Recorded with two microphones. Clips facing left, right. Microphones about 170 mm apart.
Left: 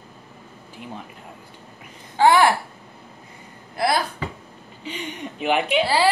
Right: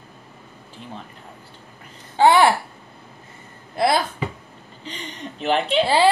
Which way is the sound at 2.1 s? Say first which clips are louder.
Right 1 dB; 20° right (ahead or behind).